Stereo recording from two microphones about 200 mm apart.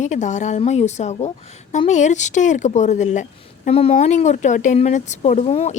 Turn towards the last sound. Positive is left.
turn(degrees=30)  # may be behind; listen again after turning